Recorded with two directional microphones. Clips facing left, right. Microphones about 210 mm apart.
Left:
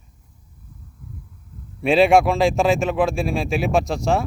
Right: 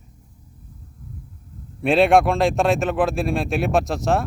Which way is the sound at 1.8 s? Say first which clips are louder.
Left 1 dB; centre (ahead or behind).